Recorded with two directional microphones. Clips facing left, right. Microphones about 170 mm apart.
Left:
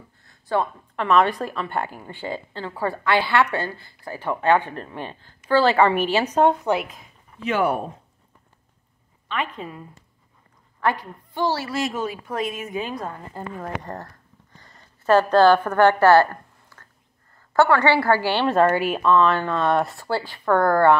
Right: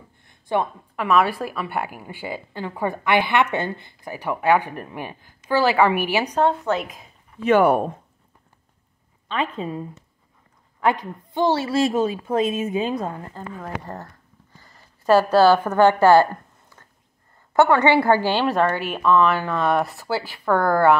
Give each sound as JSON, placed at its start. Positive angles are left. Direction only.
{"t": 0.2, "sound": "a sound", "side_deg": -20}
{"t": 0.9, "sound": "a woman's voice", "side_deg": -5}
{"t": 6.3, "sound": "a woman's voice", "side_deg": 15}
{"t": 7.5, "sound": "speech", "side_deg": -55}
{"t": 9.3, "sound": "a woman's voice", "side_deg": -30}
{"t": 13.4, "sound": "a woman's voice", "side_deg": 10}
{"t": 13.8, "sound": "a woman's voice", "side_deg": 0}
{"t": 18.5, "sound": "speech", "side_deg": 5}
{"t": 19.0, "sound": "speech", "side_deg": -5}